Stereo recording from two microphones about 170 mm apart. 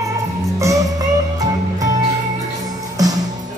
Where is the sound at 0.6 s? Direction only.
20° right (ahead or behind).